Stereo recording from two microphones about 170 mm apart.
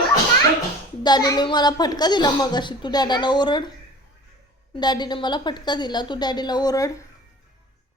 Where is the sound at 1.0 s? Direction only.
25° left (ahead or behind).